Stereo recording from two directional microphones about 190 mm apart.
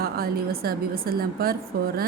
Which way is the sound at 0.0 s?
50° right (ahead or behind).